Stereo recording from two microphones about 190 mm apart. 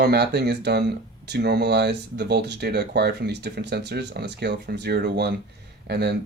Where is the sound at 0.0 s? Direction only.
60° right (ahead or behind).